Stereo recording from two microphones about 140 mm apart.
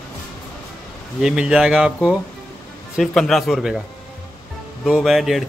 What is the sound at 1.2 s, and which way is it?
A man's voice, 5° right (ahead or behind).